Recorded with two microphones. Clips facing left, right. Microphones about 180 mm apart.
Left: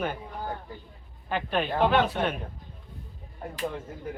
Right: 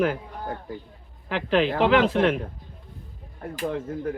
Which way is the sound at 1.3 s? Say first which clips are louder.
Right 5 dB; 90° right.